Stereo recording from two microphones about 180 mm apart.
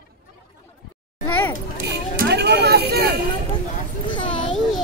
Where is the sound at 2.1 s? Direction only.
65° right (ahead or behind).